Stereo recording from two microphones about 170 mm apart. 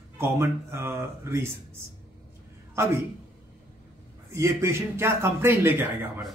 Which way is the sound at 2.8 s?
15° right (ahead or behind).